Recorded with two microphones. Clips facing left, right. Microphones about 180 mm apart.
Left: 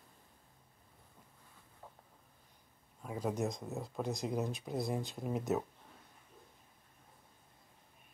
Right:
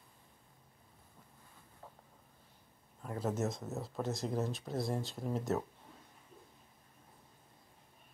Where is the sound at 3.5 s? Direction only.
Centre (ahead or behind).